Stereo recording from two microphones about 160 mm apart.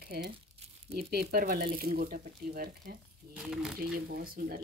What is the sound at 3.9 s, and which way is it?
Speech, 70° right (ahead or behind).